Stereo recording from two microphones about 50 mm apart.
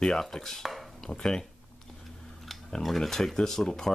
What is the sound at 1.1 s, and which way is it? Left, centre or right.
Speech, centre.